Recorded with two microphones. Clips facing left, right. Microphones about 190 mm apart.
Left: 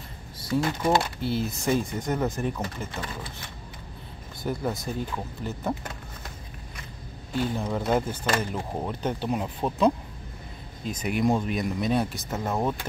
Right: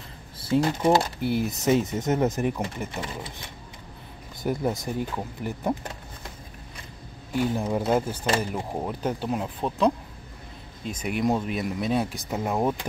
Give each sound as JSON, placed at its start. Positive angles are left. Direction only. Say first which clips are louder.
{"t": 0.4, "sound": "speech", "louder": "right 3 dB", "side_deg": -30}
{"t": 1.2, "sound": "speech", "louder": "right 3 dB", "side_deg": -15}
{"t": 4.4, "sound": "speech", "louder": "right 3 dB", "side_deg": -15}
{"t": 7.3, "sound": "speech", "louder": "right 3 dB", "side_deg": -15}
{"t": 11.0, "sound": "speech", "louder": "left 1 dB", "side_deg": 0}